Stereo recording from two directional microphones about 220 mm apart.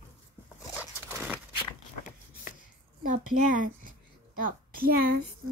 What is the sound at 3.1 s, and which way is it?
A child's voice, 35° right (ahead or behind).